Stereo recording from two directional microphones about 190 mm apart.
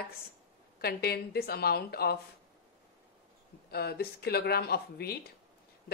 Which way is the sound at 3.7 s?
55° left (ahead or behind).